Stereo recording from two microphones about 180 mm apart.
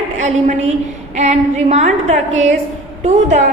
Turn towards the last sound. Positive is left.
turn(degrees=-40)  # may be behind; listen again after turning